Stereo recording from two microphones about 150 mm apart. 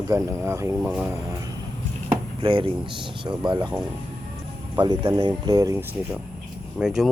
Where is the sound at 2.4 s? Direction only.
35° right (ahead or behind).